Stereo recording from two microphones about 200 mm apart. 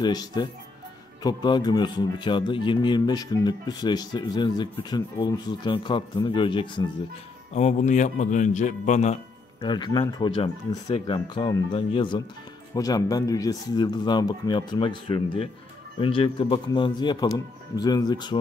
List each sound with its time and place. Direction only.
0.0 s speech: 20° left (ahead or behind)
7.5 s speech: 35° left (ahead or behind)
9.6 s speech: 20° left (ahead or behind)